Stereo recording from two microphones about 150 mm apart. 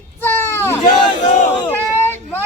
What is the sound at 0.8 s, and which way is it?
Speech, 50° left (ahead or behind).